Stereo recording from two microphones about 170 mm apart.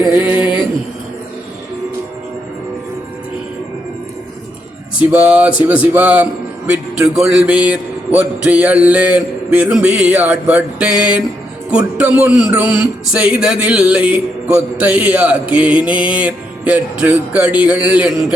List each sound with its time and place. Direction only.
0.1 s a man's voice: 10° right (ahead or behind)
0.3 s mantra: 30° left (ahead or behind)
4.9 s a man's voice: 5° right (ahead or behind)